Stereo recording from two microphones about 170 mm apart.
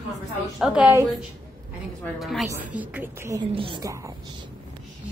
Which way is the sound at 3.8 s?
15° right (ahead or behind).